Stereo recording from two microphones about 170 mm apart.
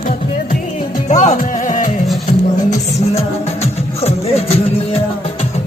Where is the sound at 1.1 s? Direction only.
45° left (ahead or behind).